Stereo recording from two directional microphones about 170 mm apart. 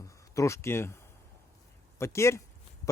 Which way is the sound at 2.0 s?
15° left (ahead or behind).